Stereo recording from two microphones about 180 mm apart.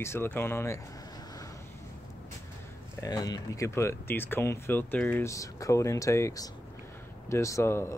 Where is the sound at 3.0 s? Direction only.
20° left (ahead or behind).